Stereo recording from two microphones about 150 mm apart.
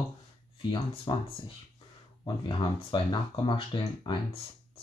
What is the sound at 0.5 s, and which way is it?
Speech, 35° left (ahead or behind).